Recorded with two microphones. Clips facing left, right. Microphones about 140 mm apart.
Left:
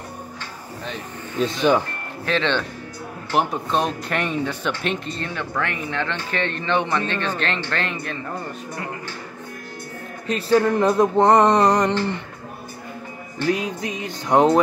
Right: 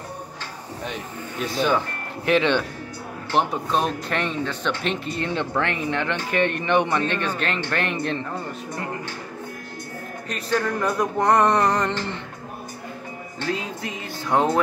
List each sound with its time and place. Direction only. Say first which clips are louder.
1.4 s music: left 4 dB; 20° left (ahead or behind)
2.2 s speech: right 3 dB; 15° right (ahead or behind)
3.3 s speech: left 1 dB; centre (ahead or behind)
5.2 s speech: right 6 dB; 25° right (ahead or behind)
10.2 s music: left 7 dB; 30° left (ahead or behind)
13.5 s music: left 5 dB; 15° left (ahead or behind)